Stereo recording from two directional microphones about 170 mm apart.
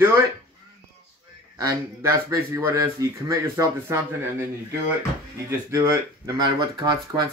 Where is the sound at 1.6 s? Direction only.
20° right (ahead or behind).